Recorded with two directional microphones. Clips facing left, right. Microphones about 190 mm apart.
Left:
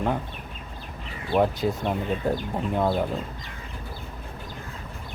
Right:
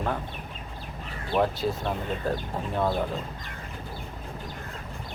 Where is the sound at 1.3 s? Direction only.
15° left (ahead or behind).